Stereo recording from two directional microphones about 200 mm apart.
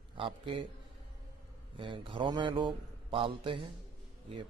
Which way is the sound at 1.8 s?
25° right (ahead or behind).